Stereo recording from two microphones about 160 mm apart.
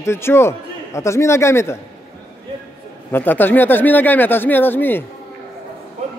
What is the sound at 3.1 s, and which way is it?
Speech, 10° left (ahead or behind).